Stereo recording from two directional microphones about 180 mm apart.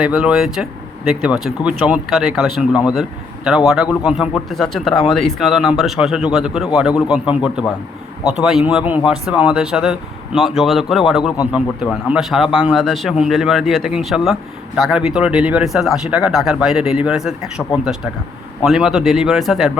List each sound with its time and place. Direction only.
0.0 s a man's voice: 5° right (ahead or behind)